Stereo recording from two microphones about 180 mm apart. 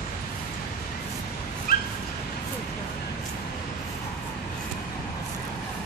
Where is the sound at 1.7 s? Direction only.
55° left (ahead or behind).